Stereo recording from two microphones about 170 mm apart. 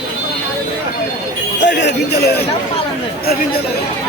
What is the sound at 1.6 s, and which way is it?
Speech, 90° left.